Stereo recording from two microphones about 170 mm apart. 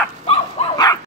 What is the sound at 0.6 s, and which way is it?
Dog, 40° left (ahead or behind).